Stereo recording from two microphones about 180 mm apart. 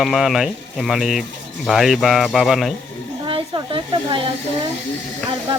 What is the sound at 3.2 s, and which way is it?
Speech, 25° right (ahead or behind).